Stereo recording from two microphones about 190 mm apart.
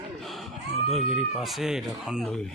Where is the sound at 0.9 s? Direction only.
5° right (ahead or behind).